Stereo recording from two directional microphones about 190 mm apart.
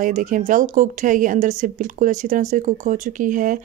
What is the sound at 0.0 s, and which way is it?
A woman's voice, 45° right (ahead or behind).